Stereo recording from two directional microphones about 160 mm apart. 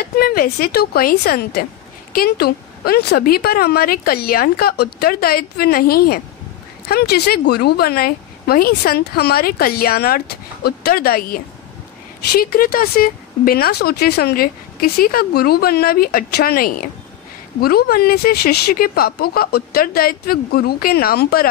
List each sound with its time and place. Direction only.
0.0 s speech: 65° left (ahead or behind); by 1.7 s 85° left
2.1 s speech: 70° left (ahead or behind)
6.9 s speech: 80° left